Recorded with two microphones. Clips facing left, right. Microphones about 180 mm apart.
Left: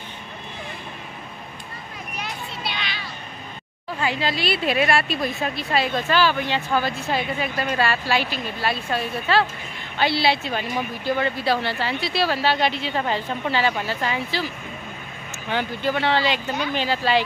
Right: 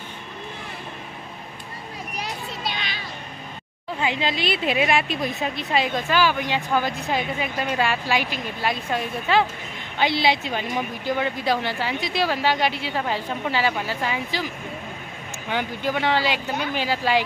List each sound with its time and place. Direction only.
2.1 s children playing: 35° right (ahead or behind)
4.0 s a woman's voice: 20° right (ahead or behind)
15.5 s a woman's voice: 15° right (ahead or behind)